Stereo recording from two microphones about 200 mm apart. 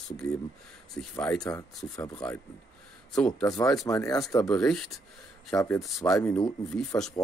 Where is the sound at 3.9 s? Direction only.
15° left (ahead or behind).